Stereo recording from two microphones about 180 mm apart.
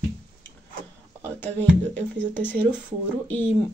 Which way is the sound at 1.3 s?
10° left (ahead or behind).